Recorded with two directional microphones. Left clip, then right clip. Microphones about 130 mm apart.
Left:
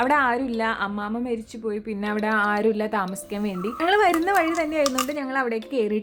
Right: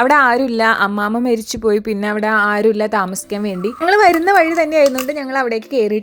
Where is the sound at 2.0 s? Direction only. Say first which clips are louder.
Right 7 dB; 30° right (ahead or behind).